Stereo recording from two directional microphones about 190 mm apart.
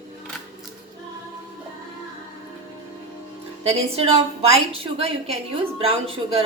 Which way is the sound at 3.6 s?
30° right (ahead or behind).